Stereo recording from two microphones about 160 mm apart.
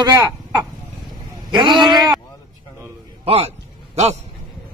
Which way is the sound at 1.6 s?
25° right (ahead or behind).